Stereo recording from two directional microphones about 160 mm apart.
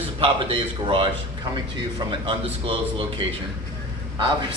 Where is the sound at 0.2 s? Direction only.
35° right (ahead or behind).